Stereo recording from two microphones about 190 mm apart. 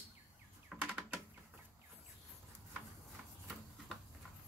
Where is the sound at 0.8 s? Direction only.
5° right (ahead or behind).